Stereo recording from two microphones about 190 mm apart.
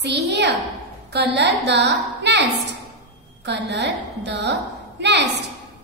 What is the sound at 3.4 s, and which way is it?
A woman's voice, 65° right (ahead or behind).